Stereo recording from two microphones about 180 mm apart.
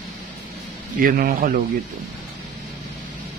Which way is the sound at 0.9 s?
55° right (ahead or behind).